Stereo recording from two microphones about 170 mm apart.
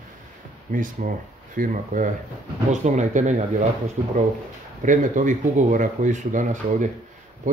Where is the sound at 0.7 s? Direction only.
50° right (ahead or behind).